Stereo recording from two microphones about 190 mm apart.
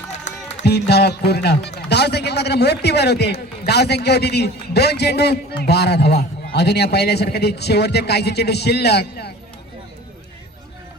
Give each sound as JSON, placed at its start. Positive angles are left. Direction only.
{"t": 0.6, "sound": "a man's voice", "side_deg": 60}